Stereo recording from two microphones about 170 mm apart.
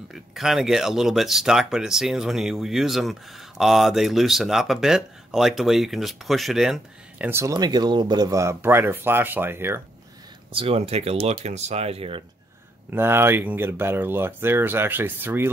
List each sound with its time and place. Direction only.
0.1 s speech: centre (ahead or behind)
7.2 s speech: 15° right (ahead or behind)
7.5 s speech: 25° right (ahead or behind)
10.5 s speech: 35° right (ahead or behind)
12.9 s speech: 15° right (ahead or behind)